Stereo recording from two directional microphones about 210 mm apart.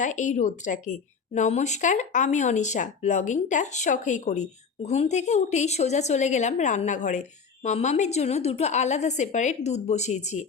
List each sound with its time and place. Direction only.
0.0 s a woman's voice: 35° left (ahead or behind)